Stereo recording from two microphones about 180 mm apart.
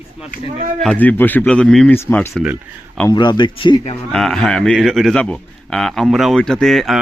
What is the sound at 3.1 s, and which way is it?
Speech, 25° left (ahead or behind).